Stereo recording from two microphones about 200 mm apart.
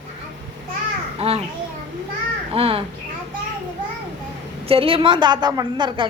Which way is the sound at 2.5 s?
30° right (ahead or behind).